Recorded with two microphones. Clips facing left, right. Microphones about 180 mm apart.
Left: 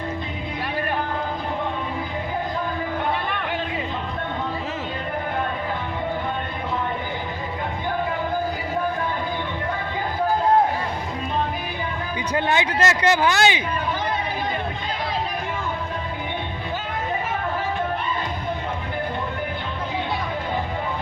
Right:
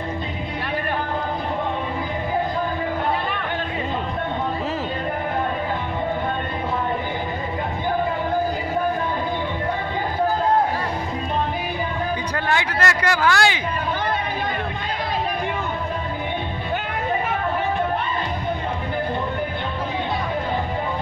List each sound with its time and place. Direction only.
12.4 s speech: 20° left (ahead or behind)